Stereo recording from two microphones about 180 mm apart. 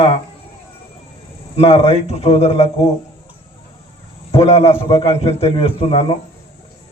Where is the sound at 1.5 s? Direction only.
35° left (ahead or behind).